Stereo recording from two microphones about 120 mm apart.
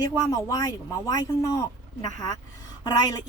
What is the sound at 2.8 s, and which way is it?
Speech, 35° left (ahead or behind).